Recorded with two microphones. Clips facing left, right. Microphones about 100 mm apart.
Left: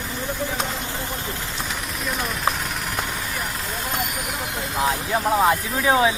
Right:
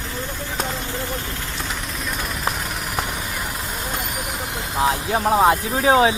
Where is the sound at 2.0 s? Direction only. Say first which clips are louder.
Left 3 dB; centre (ahead or behind).